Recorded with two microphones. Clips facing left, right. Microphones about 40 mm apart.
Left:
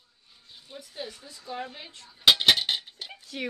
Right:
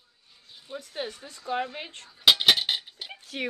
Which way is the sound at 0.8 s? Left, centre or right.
Right.